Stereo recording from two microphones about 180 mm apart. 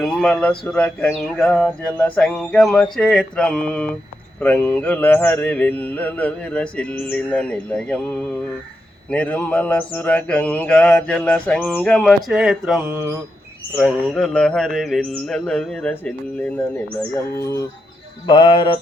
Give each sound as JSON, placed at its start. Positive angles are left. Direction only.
{"t": 0.0, "sound": "mantra", "side_deg": 5}
{"t": 13.7, "sound": "mantra", "side_deg": 0}